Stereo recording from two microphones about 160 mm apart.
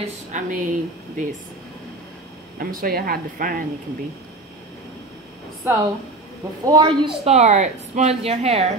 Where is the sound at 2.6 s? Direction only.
65° right (ahead or behind).